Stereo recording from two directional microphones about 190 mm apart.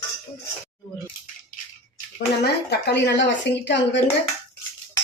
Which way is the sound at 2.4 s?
60° left (ahead or behind).